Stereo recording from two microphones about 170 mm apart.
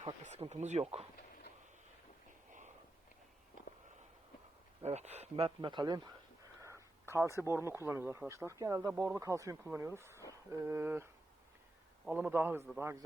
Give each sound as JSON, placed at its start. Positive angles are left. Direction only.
{"t": 0.0, "sound": "speech", "side_deg": -35}
{"t": 2.5, "sound": "a sound", "side_deg": -45}
{"t": 4.8, "sound": "speech", "side_deg": -40}
{"t": 5.6, "sound": "speech", "side_deg": -25}